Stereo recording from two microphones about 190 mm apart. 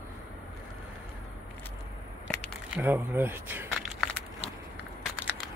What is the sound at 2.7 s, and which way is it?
Speech, 10° right (ahead or behind).